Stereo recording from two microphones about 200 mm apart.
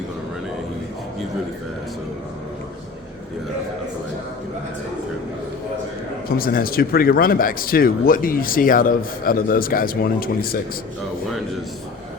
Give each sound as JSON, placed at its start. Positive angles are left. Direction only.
{"t": 6.2, "sound": "speech", "side_deg": 45}